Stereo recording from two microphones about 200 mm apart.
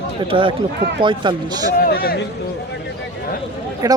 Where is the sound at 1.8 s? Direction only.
50° left (ahead or behind).